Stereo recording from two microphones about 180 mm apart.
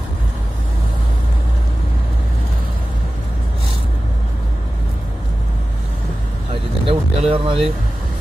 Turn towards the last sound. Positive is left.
turn(degrees=-30)  # may be behind; listen again after turning